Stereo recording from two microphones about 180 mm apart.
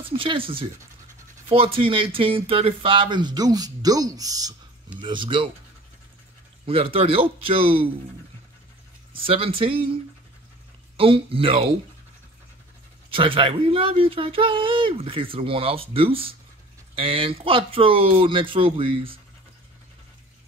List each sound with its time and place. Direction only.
0.0 s speech: 30° right (ahead or behind)
6.6 s speech: 30° right (ahead or behind)
9.1 s speech: 30° right (ahead or behind)
11.0 s speech: 30° right (ahead or behind)
13.1 s speech: 30° right (ahead or behind)